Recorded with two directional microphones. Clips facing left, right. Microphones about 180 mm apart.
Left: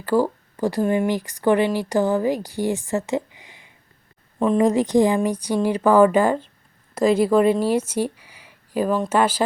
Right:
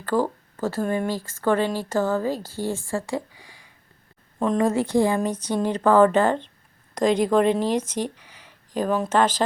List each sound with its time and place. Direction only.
0.0 s speech: 10° left (ahead or behind)